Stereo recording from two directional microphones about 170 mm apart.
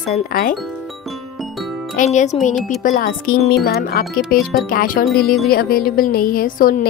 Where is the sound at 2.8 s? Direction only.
55° left (ahead or behind).